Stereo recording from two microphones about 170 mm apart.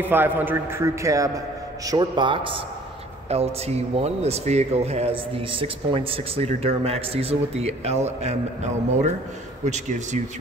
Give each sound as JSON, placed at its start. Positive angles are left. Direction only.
{"t": 0.0, "sound": "a man's voice", "side_deg": -10}
{"t": 9.7, "sound": "speech", "side_deg": -45}